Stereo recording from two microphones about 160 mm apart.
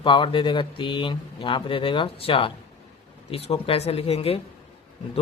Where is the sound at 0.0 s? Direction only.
30° left (ahead or behind).